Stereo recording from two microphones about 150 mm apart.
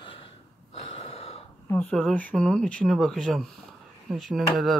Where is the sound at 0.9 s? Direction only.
40° left (ahead or behind).